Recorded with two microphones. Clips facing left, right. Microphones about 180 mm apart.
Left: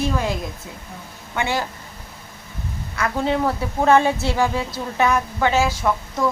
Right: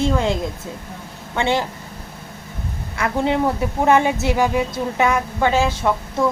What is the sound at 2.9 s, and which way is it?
A woman's voice, 20° right (ahead or behind).